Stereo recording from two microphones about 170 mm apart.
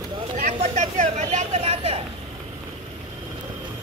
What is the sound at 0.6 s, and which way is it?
Speech, 45° right (ahead or behind).